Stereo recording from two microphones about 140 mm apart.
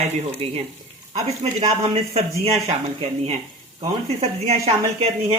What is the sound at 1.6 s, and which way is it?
Speech, 50° right (ahead or behind).